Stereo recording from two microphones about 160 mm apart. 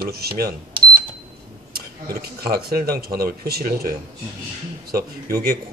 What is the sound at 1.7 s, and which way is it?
Speech, 75° right (ahead or behind).